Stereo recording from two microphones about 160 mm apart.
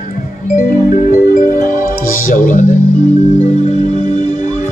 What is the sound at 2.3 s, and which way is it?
Speech, 55° left (ahead or behind).